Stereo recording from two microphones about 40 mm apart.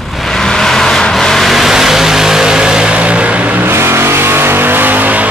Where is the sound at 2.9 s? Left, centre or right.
Right.